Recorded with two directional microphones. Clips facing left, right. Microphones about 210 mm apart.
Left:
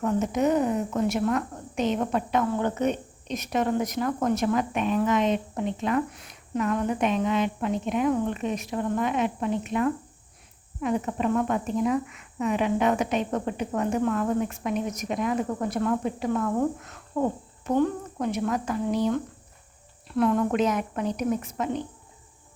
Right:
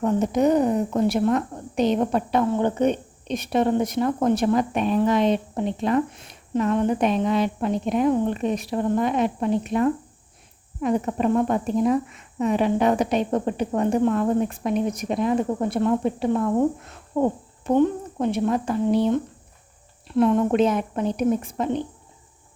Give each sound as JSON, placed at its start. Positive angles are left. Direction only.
{"t": 0.0, "sound": "a woman's voice", "side_deg": -35}